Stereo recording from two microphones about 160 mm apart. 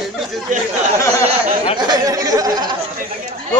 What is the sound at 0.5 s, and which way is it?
Speech, 55° right (ahead or behind).